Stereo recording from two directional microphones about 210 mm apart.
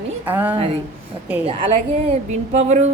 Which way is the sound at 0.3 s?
10° right (ahead or behind).